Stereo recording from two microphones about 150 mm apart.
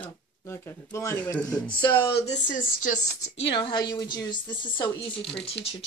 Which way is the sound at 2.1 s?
40° left (ahead or behind).